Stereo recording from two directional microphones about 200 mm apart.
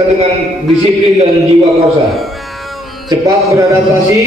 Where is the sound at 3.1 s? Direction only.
15° right (ahead or behind).